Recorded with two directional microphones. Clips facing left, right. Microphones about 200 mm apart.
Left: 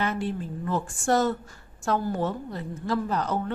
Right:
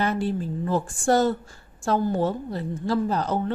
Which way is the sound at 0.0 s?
35° right (ahead or behind).